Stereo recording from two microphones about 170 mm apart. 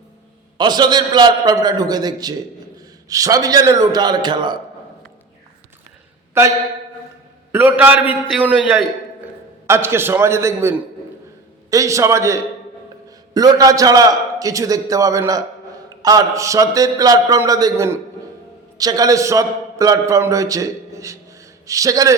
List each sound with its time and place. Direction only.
0.6 s a man's voice: 25° right (ahead or behind)
6.4 s a man's voice: 15° right (ahead or behind)
7.5 s a man's voice: 10° right (ahead or behind)